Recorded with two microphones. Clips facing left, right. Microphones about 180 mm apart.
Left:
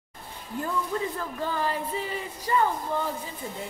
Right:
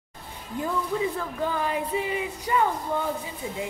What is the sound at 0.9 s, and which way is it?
Speech, 5° right (ahead or behind).